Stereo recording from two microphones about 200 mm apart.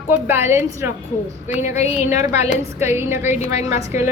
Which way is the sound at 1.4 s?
35° left (ahead or behind).